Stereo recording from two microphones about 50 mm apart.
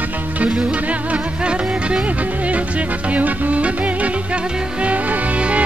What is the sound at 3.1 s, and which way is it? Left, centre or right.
Music, right.